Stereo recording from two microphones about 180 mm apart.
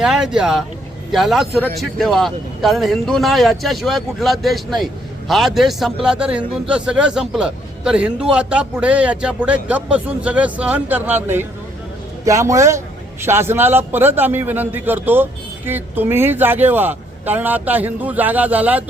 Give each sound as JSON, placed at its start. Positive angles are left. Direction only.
{"t": 0.0, "sound": "a man's voice", "side_deg": -5}